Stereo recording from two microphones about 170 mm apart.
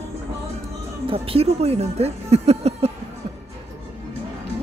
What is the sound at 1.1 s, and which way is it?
Speech, 35° right (ahead or behind).